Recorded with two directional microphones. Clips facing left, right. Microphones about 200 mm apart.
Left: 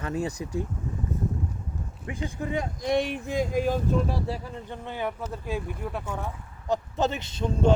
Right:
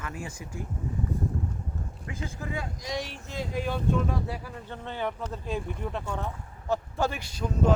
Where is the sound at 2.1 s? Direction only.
15° left (ahead or behind).